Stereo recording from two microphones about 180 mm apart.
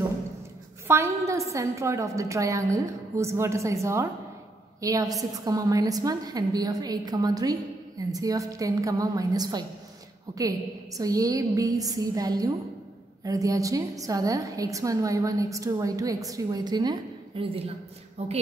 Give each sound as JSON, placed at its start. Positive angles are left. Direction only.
{"t": 0.8, "sound": "a woman's voice", "side_deg": -15}
{"t": 11.0, "sound": "a woman's voice", "side_deg": -20}